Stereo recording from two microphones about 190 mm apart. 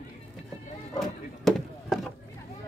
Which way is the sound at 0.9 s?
Centre (ahead or behind).